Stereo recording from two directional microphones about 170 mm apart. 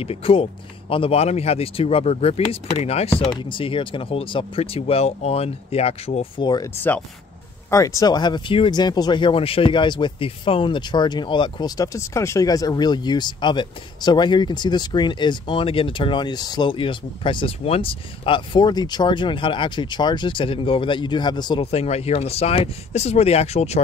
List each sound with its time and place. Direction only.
0.0 s speech: 35° left (ahead or behind)
7.7 s speech: 20° left (ahead or behind); by 23.8 s 40° left (ahead or behind)